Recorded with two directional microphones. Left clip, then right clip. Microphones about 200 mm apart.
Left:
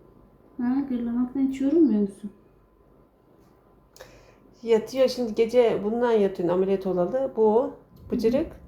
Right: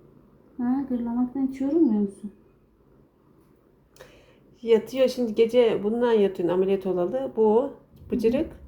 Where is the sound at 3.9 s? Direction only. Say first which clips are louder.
Left 2 dB; 10° right (ahead or behind).